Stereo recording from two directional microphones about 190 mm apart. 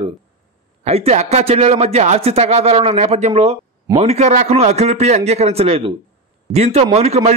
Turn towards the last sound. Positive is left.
turn(degrees=-35)  # may be behind; listen again after turning